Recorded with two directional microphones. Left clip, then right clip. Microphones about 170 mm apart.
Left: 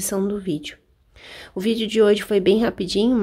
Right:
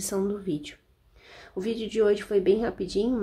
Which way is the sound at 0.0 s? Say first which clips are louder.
Left 5 dB; 40° left (ahead or behind).